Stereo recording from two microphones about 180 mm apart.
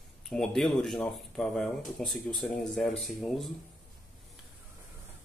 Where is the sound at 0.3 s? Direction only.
5° left (ahead or behind).